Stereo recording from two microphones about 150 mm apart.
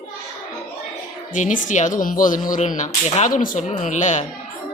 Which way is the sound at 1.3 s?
60° left (ahead or behind).